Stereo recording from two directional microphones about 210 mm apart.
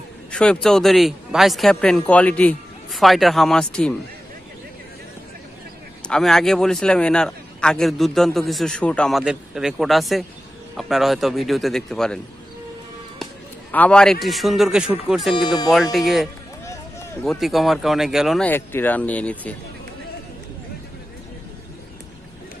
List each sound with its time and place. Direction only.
0.3 s a man's voice: 5° left (ahead or behind)
6.0 s a man's voice: 5° left (ahead or behind)
13.2 s a sound: 5° left (ahead or behind)
14.2 s a man's voice: centre (ahead or behind)
15.3 s speech: 20° left (ahead or behind)
15.7 s a man's voice: centre (ahead or behind)
18.5 s speech: 10° left (ahead or behind)